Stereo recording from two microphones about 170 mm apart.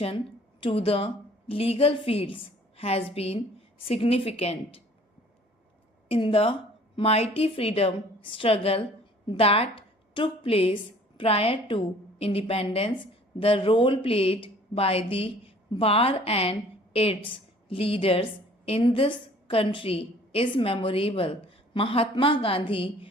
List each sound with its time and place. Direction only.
0.6 s a woman's voice: 35° left (ahead or behind)
6.1 s a woman's voice: 30° left (ahead or behind)